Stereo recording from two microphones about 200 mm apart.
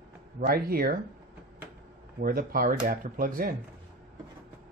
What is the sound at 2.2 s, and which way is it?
Speech, 45° right (ahead or behind).